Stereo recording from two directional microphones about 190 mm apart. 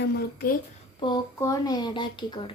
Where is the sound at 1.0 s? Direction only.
20° left (ahead or behind).